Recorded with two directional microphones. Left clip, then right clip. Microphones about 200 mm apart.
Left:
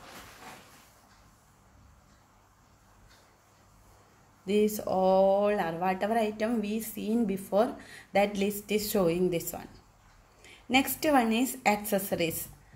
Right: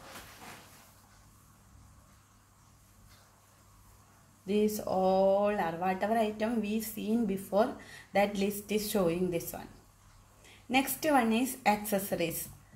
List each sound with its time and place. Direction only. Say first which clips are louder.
4.5 s speech: left 3 dB; 20° left (ahead or behind)
10.7 s a woman's voice: left 3 dB; 20° left (ahead or behind)